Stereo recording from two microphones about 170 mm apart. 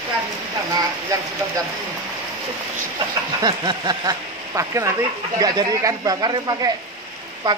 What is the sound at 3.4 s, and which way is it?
Speech, 25° right (ahead or behind).